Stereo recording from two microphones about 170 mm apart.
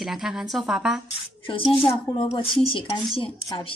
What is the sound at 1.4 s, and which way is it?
Speech, 30° left (ahead or behind).